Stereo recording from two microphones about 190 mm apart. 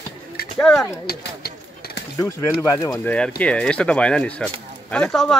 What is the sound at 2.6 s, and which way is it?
Speech, 15° left (ahead or behind).